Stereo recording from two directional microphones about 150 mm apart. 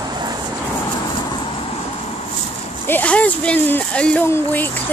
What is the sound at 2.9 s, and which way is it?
Speech, 10° left (ahead or behind).